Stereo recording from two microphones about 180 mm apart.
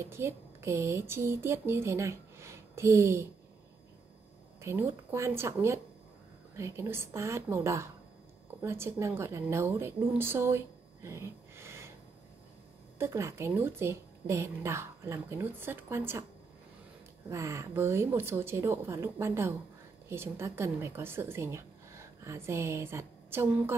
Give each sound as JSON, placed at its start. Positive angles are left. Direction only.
{"t": 0.0, "sound": "speech", "side_deg": -15}
{"t": 4.6, "sound": "a woman's voice", "side_deg": -15}
{"t": 13.0, "sound": "speech", "side_deg": -15}
{"t": 17.3, "sound": "a woman's voice", "side_deg": -15}